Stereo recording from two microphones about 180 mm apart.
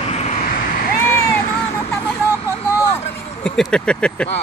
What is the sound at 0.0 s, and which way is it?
Vehicle, 40° left (ahead or behind).